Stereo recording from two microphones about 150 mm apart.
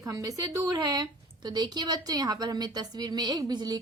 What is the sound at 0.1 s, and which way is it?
A woman's voice, 20° right (ahead or behind).